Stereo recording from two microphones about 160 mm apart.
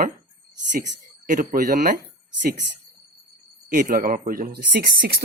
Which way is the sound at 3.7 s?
60° right (ahead or behind).